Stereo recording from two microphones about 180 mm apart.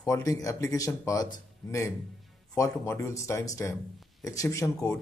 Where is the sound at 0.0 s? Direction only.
20° left (ahead or behind).